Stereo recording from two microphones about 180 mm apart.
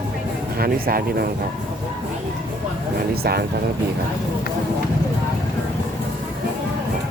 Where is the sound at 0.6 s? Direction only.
55° right (ahead or behind).